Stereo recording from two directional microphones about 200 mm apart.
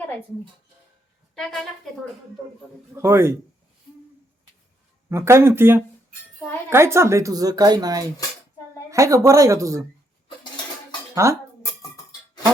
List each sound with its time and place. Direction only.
2.9 s speech: 15° right (ahead or behind)
5.0 s speech: 15° right (ahead or behind)
11.1 s speech: 15° right (ahead or behind)